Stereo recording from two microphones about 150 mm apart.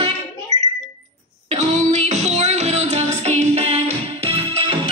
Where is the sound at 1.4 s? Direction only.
50° right (ahead or behind).